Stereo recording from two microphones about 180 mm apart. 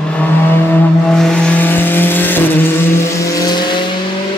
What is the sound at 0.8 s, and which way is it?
Vehicle, 5° left (ahead or behind).